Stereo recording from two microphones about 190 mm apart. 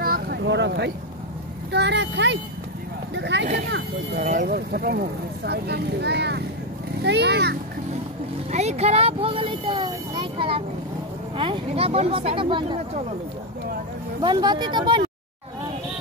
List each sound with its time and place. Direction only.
0.0 s vehicle: 55° right (ahead or behind)
1.7 s speech: 65° right (ahead or behind)
3.2 s vehicle: 65° right (ahead or behind)
3.5 s speech: 65° right (ahead or behind)
4.4 s speech: 55° right (ahead or behind)
8.5 s speech: 35° right (ahead or behind)
14.2 s speech: 25° right (ahead or behind)